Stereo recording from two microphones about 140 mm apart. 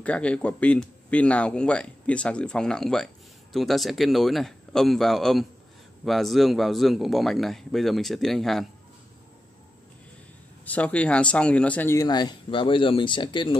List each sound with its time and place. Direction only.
0.0 s a man's voice: 10° left (ahead or behind)
10.6 s speech: 10° left (ahead or behind)
12.0 s speech: 30° left (ahead or behind)